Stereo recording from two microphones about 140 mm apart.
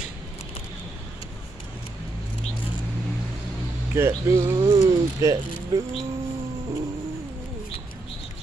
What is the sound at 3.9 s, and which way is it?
Speech, 20° right (ahead or behind).